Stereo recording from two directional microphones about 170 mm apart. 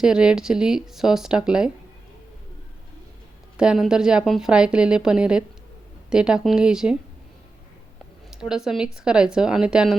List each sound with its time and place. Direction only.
0.0 s a woman's voice: 5° right (ahead or behind)
3.6 s a woman's voice: 5° right (ahead or behind)
8.4 s a woman's voice: 5° right (ahead or behind)